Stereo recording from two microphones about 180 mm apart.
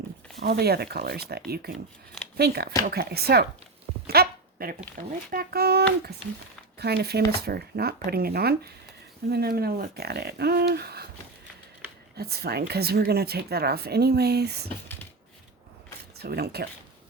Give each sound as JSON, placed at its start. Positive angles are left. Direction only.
{"t": 0.4, "sound": "a woman's voice", "side_deg": -60}
{"t": 4.0, "sound": "a sound", "side_deg": -60}
{"t": 5.3, "sound": "a woman's voice", "side_deg": -60}
{"t": 12.1, "sound": "a woman's voice", "side_deg": -60}
{"t": 16.1, "sound": "a woman's voice", "side_deg": -60}